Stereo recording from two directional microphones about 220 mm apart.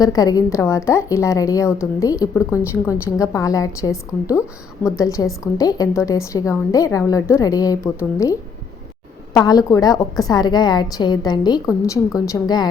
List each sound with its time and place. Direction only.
0.0 s a woman's voice: 15° left (ahead or behind)